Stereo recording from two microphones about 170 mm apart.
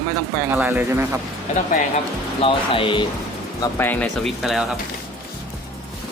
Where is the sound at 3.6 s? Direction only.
10° left (ahead or behind).